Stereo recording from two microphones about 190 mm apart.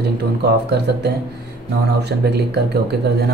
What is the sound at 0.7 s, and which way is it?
Speech, 60° right (ahead or behind).